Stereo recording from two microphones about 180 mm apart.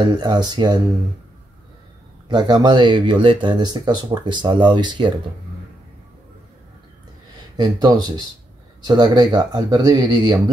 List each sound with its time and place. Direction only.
0.0 s speech: 25° right (ahead or behind)
2.2 s speech: 25° right (ahead or behind)
7.5 s speech: 25° right (ahead or behind)